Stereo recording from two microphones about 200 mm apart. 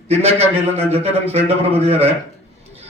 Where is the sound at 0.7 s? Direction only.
30° right (ahead or behind).